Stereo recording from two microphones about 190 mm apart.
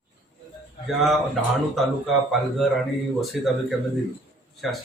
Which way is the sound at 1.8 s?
Centre (ahead or behind).